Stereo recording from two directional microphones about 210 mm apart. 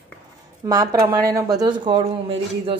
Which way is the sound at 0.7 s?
15° right (ahead or behind).